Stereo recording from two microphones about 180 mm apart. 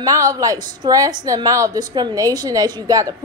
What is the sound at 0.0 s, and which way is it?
A woman's voice, 20° right (ahead or behind).